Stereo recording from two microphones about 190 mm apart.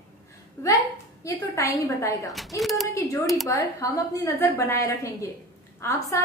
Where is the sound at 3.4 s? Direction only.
15° left (ahead or behind).